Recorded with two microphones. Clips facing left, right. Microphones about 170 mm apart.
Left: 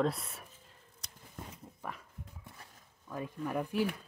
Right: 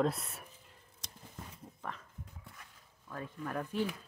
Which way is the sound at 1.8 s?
10° left (ahead or behind).